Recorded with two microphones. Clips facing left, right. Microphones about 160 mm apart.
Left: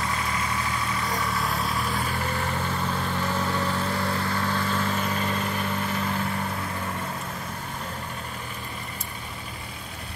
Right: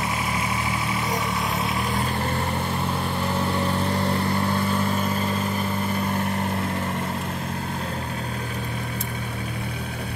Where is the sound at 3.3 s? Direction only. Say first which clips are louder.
Right 5 dB; 20° right (ahead or behind).